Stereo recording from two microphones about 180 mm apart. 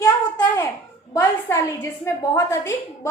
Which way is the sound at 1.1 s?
15° left (ahead or behind).